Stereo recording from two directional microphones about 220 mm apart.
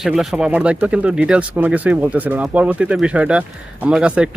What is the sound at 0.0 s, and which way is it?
Speech, centre (ahead or behind).